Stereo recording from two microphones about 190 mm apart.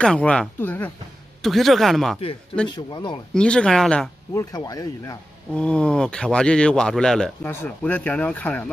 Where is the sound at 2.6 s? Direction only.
25° left (ahead or behind).